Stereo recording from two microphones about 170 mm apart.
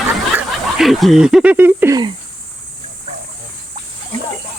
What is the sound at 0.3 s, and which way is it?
Speech, centre (ahead or behind).